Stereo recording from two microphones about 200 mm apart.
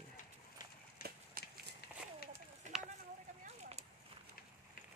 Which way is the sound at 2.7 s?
35° right (ahead or behind).